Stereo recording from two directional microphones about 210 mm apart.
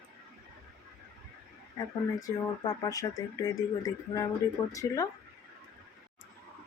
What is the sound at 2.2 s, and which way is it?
Speech, 15° left (ahead or behind).